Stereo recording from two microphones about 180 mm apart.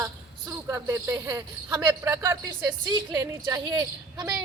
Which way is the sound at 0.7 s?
15° right (ahead or behind).